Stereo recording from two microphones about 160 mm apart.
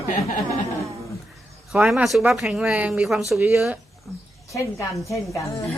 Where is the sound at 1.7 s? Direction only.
5° right (ahead or behind).